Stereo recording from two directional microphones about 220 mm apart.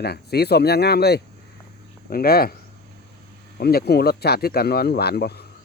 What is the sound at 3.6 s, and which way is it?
Speech, 45° left (ahead or behind).